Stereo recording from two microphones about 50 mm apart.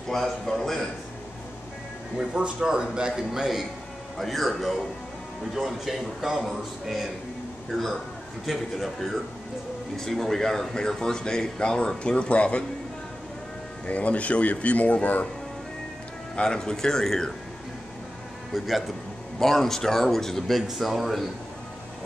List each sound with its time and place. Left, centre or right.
0.1 s speech: centre
2.1 s a man's voice: centre; by 12.6 s left
13.8 s speech: left
16.3 s speech: centre
18.5 s speech: centre